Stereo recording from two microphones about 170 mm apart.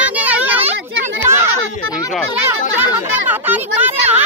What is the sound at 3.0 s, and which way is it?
A woman's voice, 10° right (ahead or behind).